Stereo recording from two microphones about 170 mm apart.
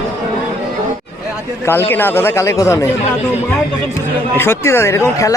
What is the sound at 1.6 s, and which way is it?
A man's voice, 10° left (ahead or behind).